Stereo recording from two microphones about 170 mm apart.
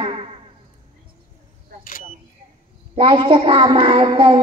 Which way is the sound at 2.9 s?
30° right (ahead or behind).